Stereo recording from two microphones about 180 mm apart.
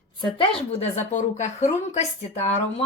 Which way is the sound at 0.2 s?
25° left (ahead or behind).